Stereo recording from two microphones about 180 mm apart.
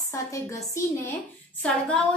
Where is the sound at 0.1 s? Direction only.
15° left (ahead or behind).